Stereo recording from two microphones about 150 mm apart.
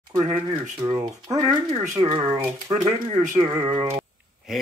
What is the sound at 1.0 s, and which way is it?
Speech, 25° right (ahead or behind).